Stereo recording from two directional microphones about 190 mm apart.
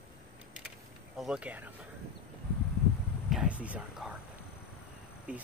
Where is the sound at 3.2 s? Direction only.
5° right (ahead or behind).